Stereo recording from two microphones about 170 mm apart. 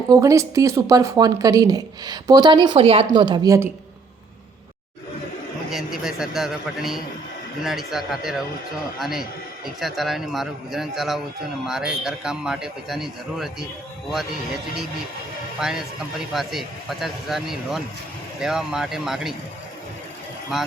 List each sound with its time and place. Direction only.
0.1 s speech: 20° right (ahead or behind)
5.7 s a man's voice: centre (ahead or behind)
20.5 s a man's voice: centre (ahead or behind)